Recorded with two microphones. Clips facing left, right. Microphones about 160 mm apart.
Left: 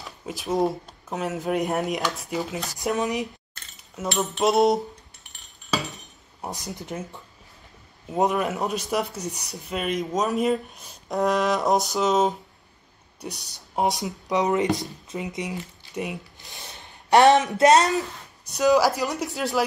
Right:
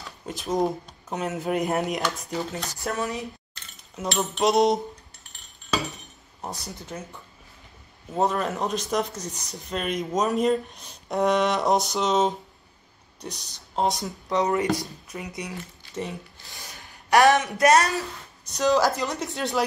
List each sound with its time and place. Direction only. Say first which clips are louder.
0.0 s speech: left 1 dB; centre (ahead or behind)
2.8 s speech: left 4 dB; 20° left (ahead or behind)
3.9 s speech: left 1 dB; centre (ahead or behind)
6.4 s speech: left 2 dB; 20° left (ahead or behind); by 12.4 s centre (ahead or behind)
13.7 s speech: left 1 dB; 20° left (ahead or behind)
18.7 s speech: left 2 dB; 5° left (ahead or behind)